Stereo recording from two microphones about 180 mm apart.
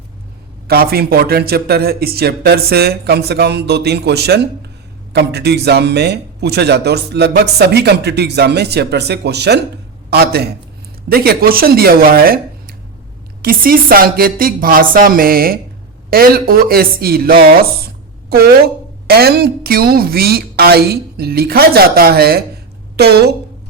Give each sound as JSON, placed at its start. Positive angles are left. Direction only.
{"t": 0.7, "sound": "a woman's voice", "side_deg": -60}